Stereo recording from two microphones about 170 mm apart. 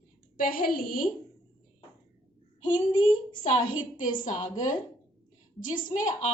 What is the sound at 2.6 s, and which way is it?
Speech, 25° left (ahead or behind).